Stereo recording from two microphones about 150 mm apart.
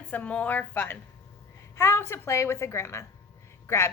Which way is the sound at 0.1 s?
10° left (ahead or behind).